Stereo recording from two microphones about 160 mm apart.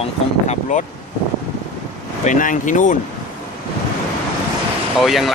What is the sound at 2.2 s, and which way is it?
Speech, 55° left (ahead or behind).